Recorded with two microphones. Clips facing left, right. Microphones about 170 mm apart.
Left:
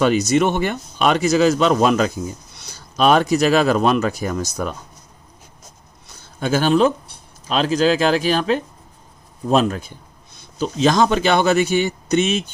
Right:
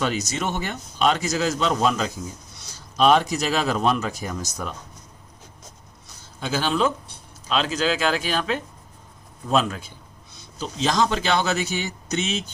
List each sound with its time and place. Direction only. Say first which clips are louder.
0.0 s a man's voice: left 10 dB; 60° left (ahead or behind)
6.4 s speech: left 7 dB; 50° left (ahead or behind)
10.3 s speech: left 8 dB; 65° left (ahead or behind)